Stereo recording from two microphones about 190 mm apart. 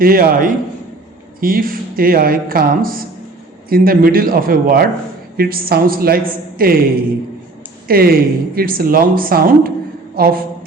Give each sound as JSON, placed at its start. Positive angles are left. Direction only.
{"t": 0.0, "sound": "speech", "side_deg": -50}
{"t": 7.9, "sound": "speech", "side_deg": -50}